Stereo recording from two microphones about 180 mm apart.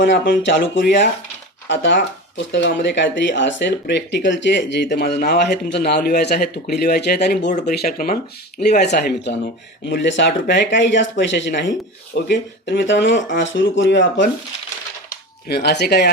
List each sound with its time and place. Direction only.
0.1 s speech: 80° left; by 8.2 s 50° left (ahead or behind)
8.9 s speech: 65° left (ahead or behind)
9.9 s speech: 85° left
13.3 s speech: 90° left
15.4 s speech: 65° left (ahead or behind)